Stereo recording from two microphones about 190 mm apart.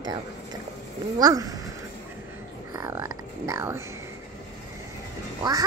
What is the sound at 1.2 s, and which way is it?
Speech, 20° right (ahead or behind).